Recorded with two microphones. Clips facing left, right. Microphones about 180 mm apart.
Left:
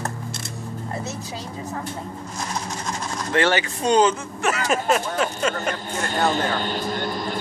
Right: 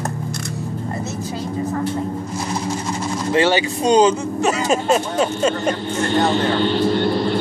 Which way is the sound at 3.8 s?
15° right (ahead or behind).